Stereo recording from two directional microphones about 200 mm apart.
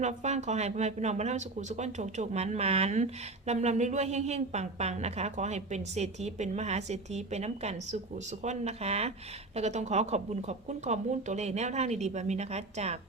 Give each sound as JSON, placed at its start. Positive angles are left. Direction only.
{"t": 0.0, "sound": "speech", "side_deg": -35}